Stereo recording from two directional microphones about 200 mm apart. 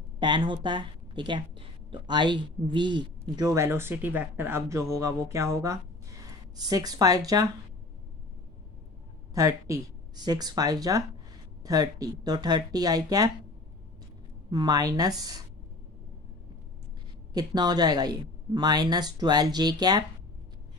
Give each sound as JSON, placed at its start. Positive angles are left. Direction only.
{"t": 0.2, "sound": "a woman's voice", "side_deg": -20}
{"t": 9.3, "sound": "a woman's voice", "side_deg": -15}
{"t": 14.5, "sound": "a woman's voice", "side_deg": -20}
{"t": 17.3, "sound": "a woman's voice", "side_deg": -20}